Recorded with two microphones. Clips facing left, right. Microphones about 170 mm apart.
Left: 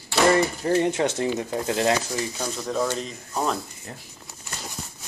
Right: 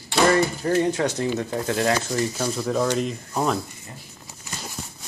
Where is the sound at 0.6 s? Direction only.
25° left (ahead or behind).